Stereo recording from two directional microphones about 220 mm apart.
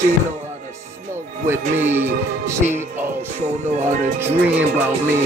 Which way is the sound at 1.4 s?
10° right (ahead or behind).